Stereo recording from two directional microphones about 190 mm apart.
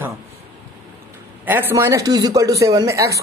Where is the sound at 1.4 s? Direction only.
10° right (ahead or behind).